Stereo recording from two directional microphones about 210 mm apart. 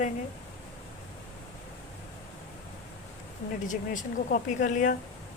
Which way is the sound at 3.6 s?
35° left (ahead or behind).